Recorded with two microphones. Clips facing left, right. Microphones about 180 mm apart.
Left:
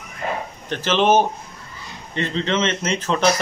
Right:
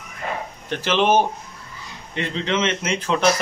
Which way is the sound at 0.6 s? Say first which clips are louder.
Left 1 dB; 10° right (ahead or behind).